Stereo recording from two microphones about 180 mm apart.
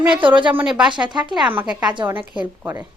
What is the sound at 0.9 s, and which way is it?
Speech, 25° right (ahead or behind).